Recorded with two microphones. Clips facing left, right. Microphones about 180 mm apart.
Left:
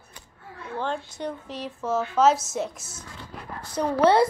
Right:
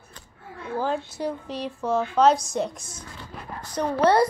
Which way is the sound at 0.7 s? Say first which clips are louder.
Right 3 dB; 5° right (ahead or behind).